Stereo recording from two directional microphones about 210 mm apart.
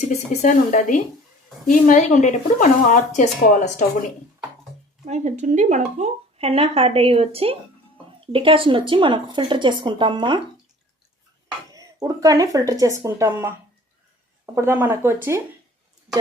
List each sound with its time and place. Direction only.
0.1 s speech: 35° left (ahead or behind)
5.0 s speech: 35° right (ahead or behind)
11.7 s speech: 15° right (ahead or behind)